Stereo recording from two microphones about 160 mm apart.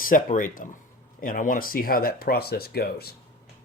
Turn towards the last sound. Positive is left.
turn(degrees=75)  # may be behind; listen again after turning